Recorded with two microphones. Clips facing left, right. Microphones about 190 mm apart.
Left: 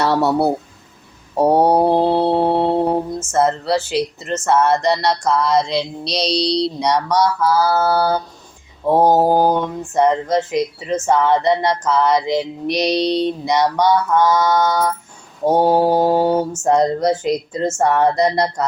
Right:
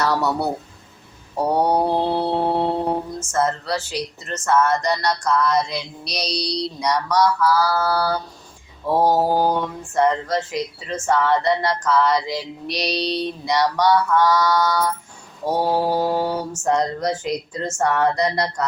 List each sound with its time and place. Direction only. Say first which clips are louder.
0.0 s speech: left 5 dB; 30° left (ahead or behind)
9.2 s mantra: left 4 dB; 45° left (ahead or behind)
9.5 s speech: left 4 dB; 20° left (ahead or behind)